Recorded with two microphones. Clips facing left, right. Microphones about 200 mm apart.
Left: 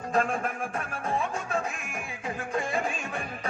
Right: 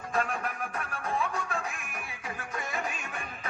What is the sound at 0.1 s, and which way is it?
Music, 30° left (ahead or behind).